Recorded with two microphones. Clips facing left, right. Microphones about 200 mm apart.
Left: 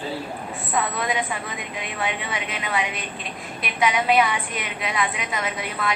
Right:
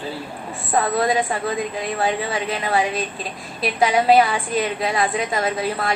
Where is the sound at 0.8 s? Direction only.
35° right (ahead or behind).